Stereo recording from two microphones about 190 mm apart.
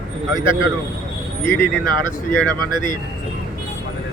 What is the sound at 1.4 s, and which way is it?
Speech, 10° left (ahead or behind).